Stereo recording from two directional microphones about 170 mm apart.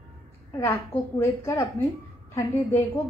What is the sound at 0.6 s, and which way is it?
A woman's voice, 15° left (ahead or behind).